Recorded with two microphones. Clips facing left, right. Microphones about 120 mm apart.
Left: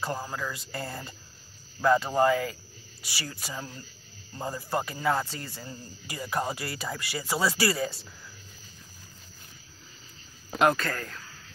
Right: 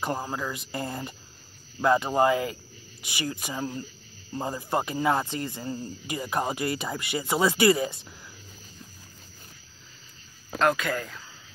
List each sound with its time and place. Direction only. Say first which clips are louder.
0.0 s speech: right 3 dB; 20° right (ahead or behind)
10.8 s speech: right 3 dB; 10° right (ahead or behind)